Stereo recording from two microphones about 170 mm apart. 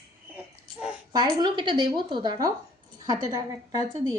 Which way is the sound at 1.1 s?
25° right (ahead or behind).